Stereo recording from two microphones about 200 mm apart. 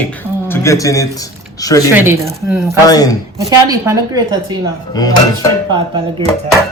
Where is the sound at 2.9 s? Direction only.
20° left (ahead or behind).